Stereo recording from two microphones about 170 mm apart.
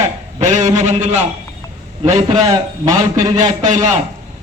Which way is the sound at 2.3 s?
20° right (ahead or behind).